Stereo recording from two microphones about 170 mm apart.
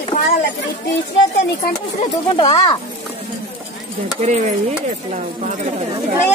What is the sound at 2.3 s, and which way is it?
Speech, 30° left (ahead or behind).